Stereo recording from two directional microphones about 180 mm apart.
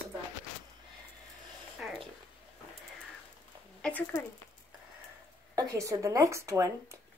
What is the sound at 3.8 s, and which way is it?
Speech, 5° left (ahead or behind).